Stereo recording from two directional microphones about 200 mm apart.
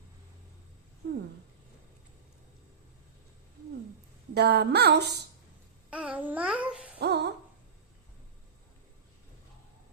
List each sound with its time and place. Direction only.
4.4 s a woman's voice: 55° right (ahead or behind)
5.9 s babbling: 5° right (ahead or behind)
7.0 s a sound: 55° right (ahead or behind)